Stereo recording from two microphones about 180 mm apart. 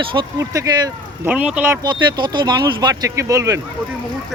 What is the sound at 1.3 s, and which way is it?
Speech, 5° right (ahead or behind).